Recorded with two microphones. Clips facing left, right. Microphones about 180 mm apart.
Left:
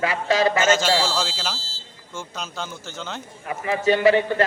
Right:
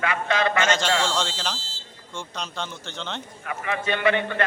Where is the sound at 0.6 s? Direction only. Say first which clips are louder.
Left 3 dB; 5° left (ahead or behind).